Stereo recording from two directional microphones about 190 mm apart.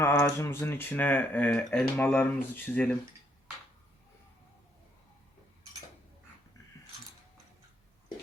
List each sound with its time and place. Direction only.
0.0 s speech: 15° left (ahead or behind)